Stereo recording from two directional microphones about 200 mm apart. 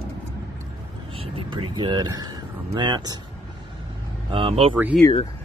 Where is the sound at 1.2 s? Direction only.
25° right (ahead or behind).